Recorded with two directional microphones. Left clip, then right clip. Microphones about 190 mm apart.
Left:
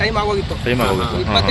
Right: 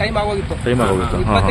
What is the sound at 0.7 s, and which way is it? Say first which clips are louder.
Speech: right 1 dB; 35° right (ahead or behind).